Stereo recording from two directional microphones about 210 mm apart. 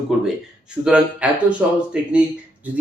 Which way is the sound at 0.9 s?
5° right (ahead or behind).